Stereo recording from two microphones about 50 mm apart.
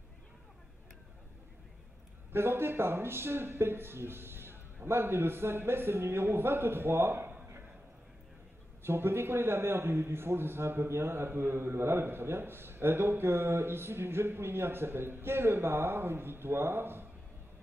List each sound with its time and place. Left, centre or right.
2.3 s a man's voice: right
8.8 s a man's voice: right